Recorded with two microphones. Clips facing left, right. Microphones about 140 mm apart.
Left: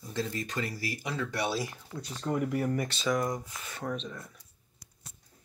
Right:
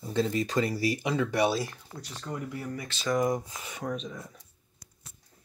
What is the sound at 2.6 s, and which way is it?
Speech, 45° left (ahead or behind).